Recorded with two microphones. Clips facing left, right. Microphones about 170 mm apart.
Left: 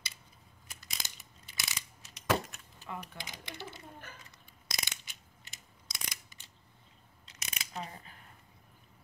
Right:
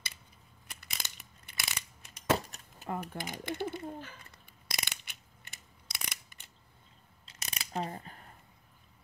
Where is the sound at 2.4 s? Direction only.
40° right (ahead or behind).